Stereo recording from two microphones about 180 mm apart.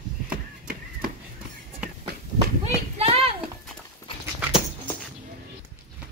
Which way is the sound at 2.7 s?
35° right (ahead or behind).